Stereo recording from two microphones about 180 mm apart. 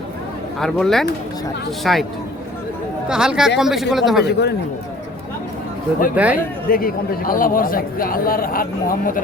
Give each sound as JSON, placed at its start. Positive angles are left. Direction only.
{"t": 0.6, "sound": "a man's voice", "side_deg": 0}
{"t": 3.1, "sound": "a man's voice", "side_deg": -5}
{"t": 4.2, "sound": "speech", "side_deg": 70}
{"t": 6.1, "sound": "speech", "side_deg": -10}
{"t": 6.7, "sound": "speech", "side_deg": 55}